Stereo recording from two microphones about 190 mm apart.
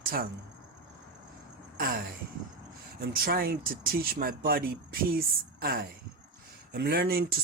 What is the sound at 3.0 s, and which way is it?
Speech, 50° right (ahead or behind).